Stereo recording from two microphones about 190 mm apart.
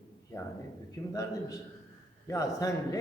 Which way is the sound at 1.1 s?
20° left (ahead or behind).